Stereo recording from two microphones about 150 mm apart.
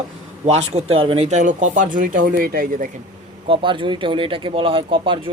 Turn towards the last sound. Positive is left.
turn(degrees=-35)  # may be behind; listen again after turning